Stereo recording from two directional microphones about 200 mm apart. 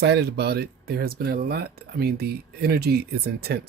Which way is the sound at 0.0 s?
55° right (ahead or behind).